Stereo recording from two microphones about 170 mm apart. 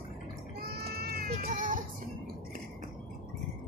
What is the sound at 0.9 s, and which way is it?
Cat, 65° right (ahead or behind).